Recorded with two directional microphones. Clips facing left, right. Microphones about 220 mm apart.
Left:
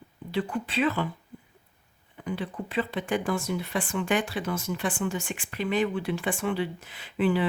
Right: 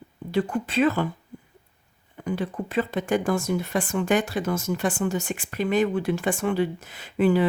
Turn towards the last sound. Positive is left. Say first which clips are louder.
# right 4 dB
turn(degrees=-45)  # may be behind; listen again after turning